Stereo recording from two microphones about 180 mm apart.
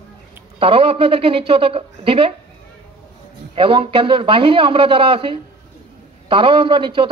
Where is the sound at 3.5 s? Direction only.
30° right (ahead or behind).